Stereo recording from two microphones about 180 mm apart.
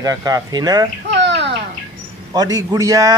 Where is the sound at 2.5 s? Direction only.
20° right (ahead or behind).